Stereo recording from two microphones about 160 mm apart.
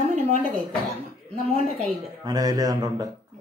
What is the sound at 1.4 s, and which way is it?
Speech, 40° right (ahead or behind).